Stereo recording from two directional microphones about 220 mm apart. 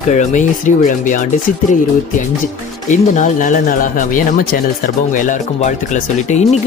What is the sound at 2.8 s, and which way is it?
Speech, 35° left (ahead or behind).